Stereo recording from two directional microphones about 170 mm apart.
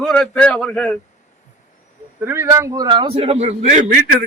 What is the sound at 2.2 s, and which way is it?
A man's voice, 15° right (ahead or behind).